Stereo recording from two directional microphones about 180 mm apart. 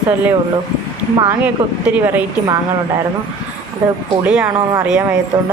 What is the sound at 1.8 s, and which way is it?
Speech, 10° right (ahead or behind).